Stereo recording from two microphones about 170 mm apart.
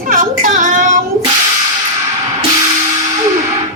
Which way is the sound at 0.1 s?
50° right (ahead or behind).